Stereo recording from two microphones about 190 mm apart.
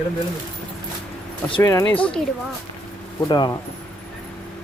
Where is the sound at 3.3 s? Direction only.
20° left (ahead or behind).